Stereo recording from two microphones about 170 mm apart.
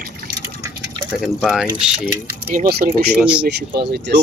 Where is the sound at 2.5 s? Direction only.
60° right (ahead or behind).